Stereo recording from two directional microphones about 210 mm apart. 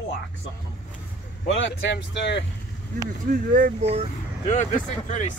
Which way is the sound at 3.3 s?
40° right (ahead or behind).